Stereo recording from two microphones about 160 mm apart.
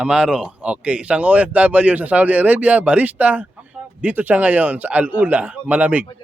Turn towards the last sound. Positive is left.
turn(degrees=-10)  # may be behind; listen again after turning